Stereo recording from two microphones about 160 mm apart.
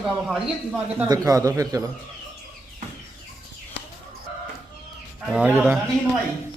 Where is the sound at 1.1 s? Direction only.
20° right (ahead or behind).